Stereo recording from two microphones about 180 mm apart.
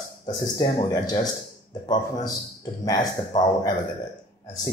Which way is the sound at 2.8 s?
20° left (ahead or behind).